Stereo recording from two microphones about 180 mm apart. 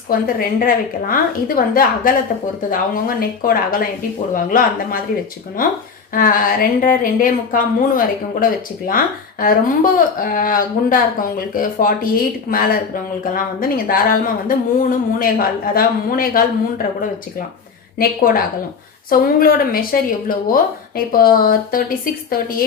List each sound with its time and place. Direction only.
0.1 s speech: 50° left (ahead or behind)
6.1 s a woman's voice: 50° left (ahead or behind)